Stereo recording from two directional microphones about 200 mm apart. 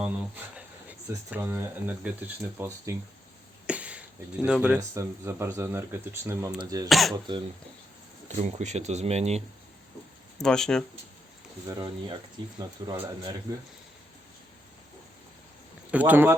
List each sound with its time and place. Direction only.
0.0 s speech: 5° right (ahead or behind)
3.7 s a sound: 5° right (ahead or behind)
4.4 s speech: 5° right (ahead or behind)
4.8 s speech: 15° right (ahead or behind)
6.8 s speech: centre (ahead or behind)
8.4 s speech: 35° right (ahead or behind)
10.4 s speech: 5° left (ahead or behind)
11.6 s speech: 20° right (ahead or behind)
15.9 s speech: 10° right (ahead or behind)